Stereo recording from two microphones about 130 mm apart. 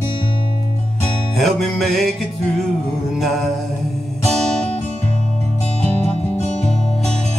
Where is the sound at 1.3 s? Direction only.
Centre (ahead or behind).